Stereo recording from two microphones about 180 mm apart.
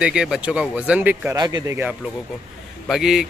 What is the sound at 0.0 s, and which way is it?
Speech, 5° right (ahead or behind).